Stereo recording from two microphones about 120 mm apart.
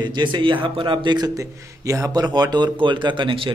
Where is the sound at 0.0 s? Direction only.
40° right (ahead or behind).